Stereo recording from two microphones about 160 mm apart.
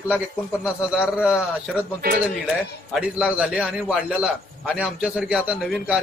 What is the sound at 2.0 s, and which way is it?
Speech, 70° right (ahead or behind).